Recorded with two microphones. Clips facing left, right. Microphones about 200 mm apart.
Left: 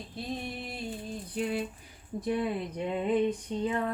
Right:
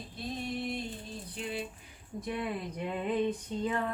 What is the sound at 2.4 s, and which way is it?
Speech, 25° left (ahead or behind).